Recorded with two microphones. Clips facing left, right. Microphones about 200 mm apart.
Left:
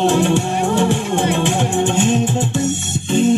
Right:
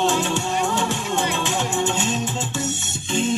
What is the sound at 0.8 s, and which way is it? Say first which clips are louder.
Music: left 7 dB; 55° left (ahead or behind).